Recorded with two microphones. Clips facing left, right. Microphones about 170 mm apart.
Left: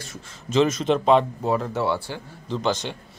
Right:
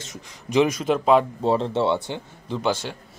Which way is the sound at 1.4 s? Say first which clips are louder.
Right 3 dB; 30° right (ahead or behind).